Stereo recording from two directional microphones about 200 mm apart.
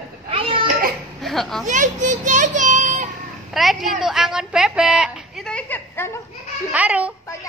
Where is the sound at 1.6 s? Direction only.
40° right (ahead or behind).